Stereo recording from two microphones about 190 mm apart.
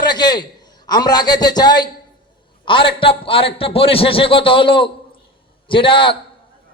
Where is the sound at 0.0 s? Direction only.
20° left (ahead or behind).